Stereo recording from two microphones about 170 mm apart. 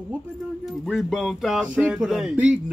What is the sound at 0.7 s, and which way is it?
Speech, centre (ahead or behind).